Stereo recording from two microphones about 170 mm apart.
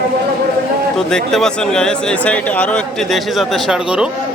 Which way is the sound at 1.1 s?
5° left (ahead or behind).